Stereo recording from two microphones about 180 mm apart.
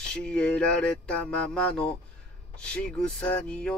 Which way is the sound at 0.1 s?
5° left (ahead or behind).